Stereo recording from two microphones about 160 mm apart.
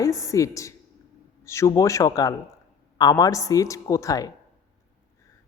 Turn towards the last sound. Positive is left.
turn(degrees=20)  # may be behind; listen again after turning